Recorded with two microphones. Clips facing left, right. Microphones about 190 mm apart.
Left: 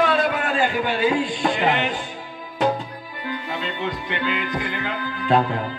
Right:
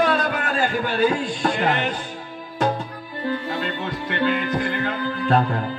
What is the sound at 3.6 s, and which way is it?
A man's voice, 45° right (ahead or behind).